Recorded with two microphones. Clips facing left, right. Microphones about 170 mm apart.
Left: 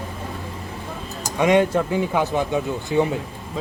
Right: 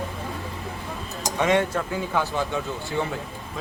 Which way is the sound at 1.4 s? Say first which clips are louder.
Left 5 dB; 15° left (ahead or behind).